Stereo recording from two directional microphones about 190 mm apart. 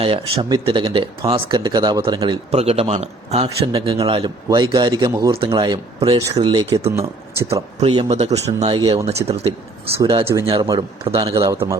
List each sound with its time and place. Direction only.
0.0 s a man's voice: 25° right (ahead or behind)
10.0 s a man's voice: 20° right (ahead or behind)